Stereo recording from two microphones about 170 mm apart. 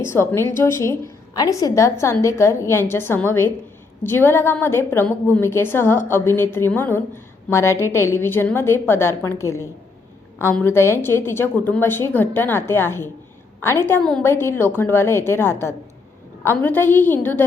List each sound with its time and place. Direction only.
0.1 s a woman's voice: 15° left (ahead or behind)